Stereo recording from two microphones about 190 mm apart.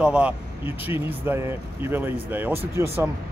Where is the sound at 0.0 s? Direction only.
5° right (ahead or behind).